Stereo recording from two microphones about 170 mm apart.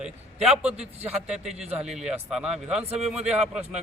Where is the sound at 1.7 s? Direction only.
5° right (ahead or behind).